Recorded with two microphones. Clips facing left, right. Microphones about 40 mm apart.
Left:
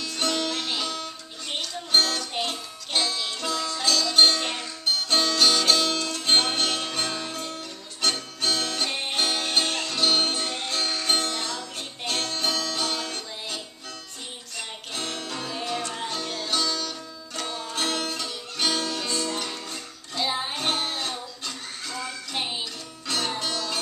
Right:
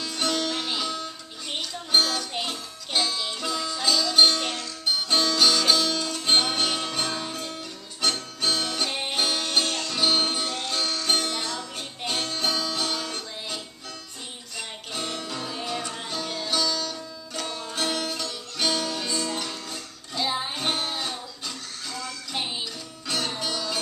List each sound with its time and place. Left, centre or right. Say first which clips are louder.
0.0 s music: even; centre
4.4 s music: even; left
4.8 s music: even; centre
9.4 s music: even; centre
9.9 s music: even; centre
10.4 s music: even; centre
11.2 s music: even; centre
15.0 s music: right 1 dB; centre